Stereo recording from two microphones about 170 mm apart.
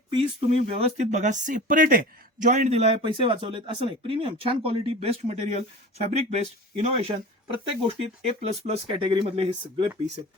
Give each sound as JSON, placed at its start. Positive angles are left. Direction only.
{"t": 0.1, "sound": "speech", "side_deg": -35}